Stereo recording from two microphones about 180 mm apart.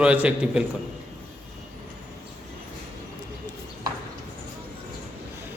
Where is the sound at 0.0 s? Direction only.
5° right (ahead or behind).